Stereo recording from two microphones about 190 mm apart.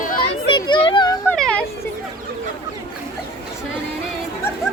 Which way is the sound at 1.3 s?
5° left (ahead or behind).